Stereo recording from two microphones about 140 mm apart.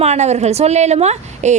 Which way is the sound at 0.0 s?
50° right (ahead or behind).